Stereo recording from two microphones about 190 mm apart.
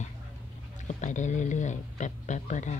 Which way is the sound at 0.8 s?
40° left (ahead or behind).